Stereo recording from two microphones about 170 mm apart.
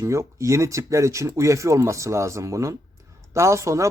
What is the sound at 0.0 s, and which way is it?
Speech, 15° right (ahead or behind).